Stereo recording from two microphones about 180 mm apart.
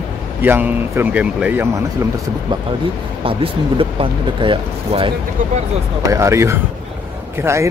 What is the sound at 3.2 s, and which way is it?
Speech, 30° right (ahead or behind).